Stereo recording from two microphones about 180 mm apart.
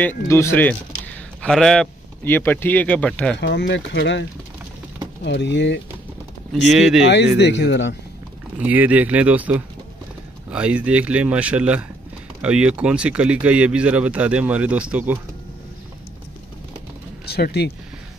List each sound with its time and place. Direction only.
0.3 s speech: 15° left (ahead or behind)
3.3 s speech: 70° left (ahead or behind)
6.7 s speech: centre (ahead or behind)
7.3 s speech: 70° left (ahead or behind)
8.5 s speech: 10° right (ahead or behind)
17.3 s speech: 60° left (ahead or behind)